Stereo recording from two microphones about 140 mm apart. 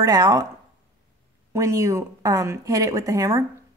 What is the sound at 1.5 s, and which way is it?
Speech, 20° right (ahead or behind).